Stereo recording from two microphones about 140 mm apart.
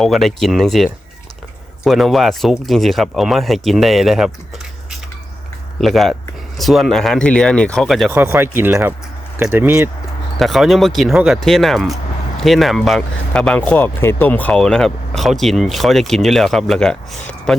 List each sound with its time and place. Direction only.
0.0 s speech: centre (ahead or behind)
5.8 s speech: centre (ahead or behind)
8.1 s speech: 15° right (ahead or behind)
10.3 s speech: centre (ahead or behind)